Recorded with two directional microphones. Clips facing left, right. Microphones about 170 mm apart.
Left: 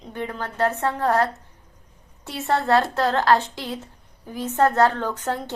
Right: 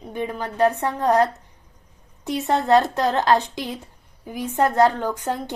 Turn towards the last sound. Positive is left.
turn(degrees=-15)  # may be behind; listen again after turning